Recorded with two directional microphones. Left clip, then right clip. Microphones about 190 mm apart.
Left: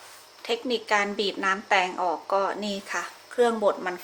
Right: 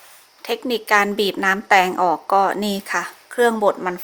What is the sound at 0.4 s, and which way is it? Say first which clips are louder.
A woman's voice: right 5 dB; 55° right (ahead or behind).